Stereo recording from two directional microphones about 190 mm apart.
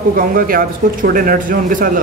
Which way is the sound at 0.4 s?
50° right (ahead or behind).